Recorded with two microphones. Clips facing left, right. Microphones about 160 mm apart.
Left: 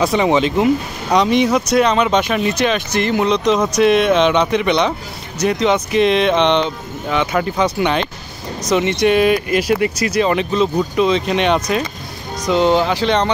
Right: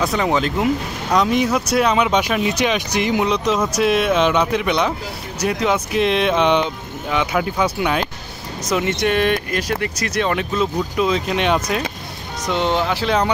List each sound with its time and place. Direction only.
0.0 s speech: centre (ahead or behind)